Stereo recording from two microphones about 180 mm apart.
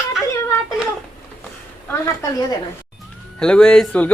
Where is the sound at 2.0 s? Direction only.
20° left (ahead or behind).